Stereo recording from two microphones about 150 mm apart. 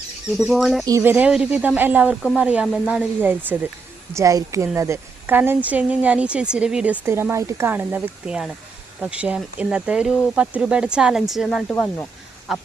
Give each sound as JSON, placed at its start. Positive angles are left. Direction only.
{"t": 0.3, "sound": "speech", "side_deg": 0}
{"t": 0.9, "sound": "speech", "side_deg": -20}
{"t": 1.1, "sound": "a woman's voice", "side_deg": -10}